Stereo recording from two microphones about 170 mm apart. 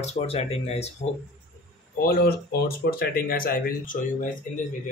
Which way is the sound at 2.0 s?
60° left (ahead or behind).